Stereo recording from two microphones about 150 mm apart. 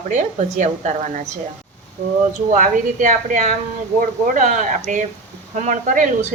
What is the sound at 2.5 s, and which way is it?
A woman's voice, 60° right (ahead or behind).